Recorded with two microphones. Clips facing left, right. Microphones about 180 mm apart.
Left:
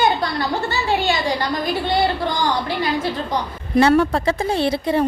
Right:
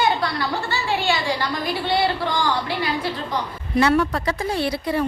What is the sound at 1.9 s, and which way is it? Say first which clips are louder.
Speech: even; 45° left (ahead or behind).